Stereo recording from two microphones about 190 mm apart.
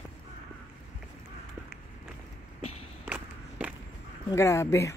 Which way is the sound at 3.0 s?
10° right (ahead or behind).